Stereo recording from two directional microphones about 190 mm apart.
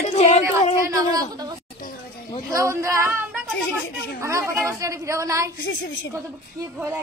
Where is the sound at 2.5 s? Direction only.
15° right (ahead or behind).